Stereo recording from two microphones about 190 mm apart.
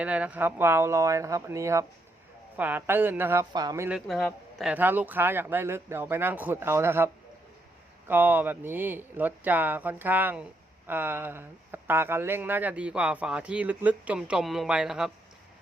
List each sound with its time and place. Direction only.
0.0 s speech: 5° right (ahead or behind)
3.8 s speech: centre (ahead or behind)